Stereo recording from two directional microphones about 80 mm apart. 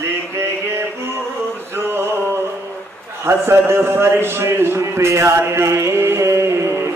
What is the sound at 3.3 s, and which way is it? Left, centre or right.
A man's voice, right.